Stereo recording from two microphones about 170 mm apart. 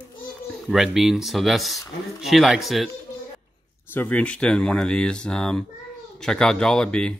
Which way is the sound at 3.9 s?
10° left (ahead or behind).